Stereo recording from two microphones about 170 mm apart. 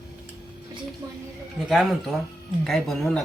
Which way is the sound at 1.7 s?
Centre (ahead or behind).